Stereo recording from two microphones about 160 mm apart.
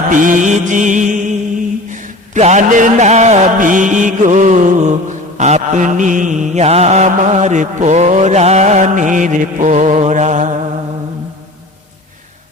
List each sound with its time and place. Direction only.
0.1 s music: 55° right (ahead or behind)